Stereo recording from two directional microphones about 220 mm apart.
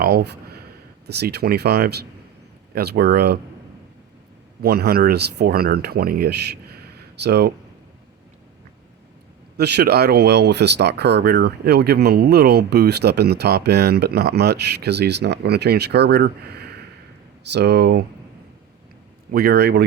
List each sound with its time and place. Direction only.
0.0 s a sound: 45° right (ahead or behind)
1.0 s speech: 50° right (ahead or behind)
4.6 s speech: 45° right (ahead or behind)
9.6 s speech: 50° right (ahead or behind)
19.3 s speech: 45° right (ahead or behind)